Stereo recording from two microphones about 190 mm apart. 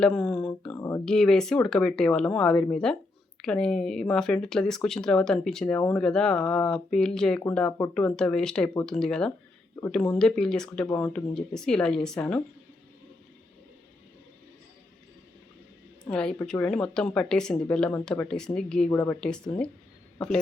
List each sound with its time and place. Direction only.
0.0 s speech: centre (ahead or behind)
0.8 s a sound: 15° left (ahead or behind)
1.0 s speech: 5° left (ahead or behind)
10.8 s speech: 15° left (ahead or behind)
11.1 s speech: 5° left (ahead or behind)
16.0 s a man's voice: 5° left (ahead or behind)